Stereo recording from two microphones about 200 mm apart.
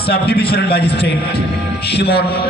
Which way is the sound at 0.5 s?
50° left (ahead or behind).